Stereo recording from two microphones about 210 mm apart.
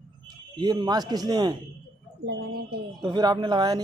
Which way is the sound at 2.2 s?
50° right (ahead or behind).